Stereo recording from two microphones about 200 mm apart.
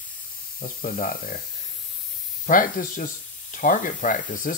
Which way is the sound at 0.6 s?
40° left (ahead or behind).